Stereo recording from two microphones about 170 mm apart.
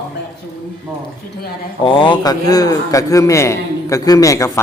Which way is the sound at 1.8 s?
30° left (ahead or behind).